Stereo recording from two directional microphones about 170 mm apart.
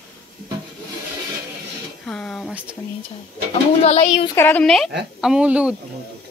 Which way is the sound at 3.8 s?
40° left (ahead or behind).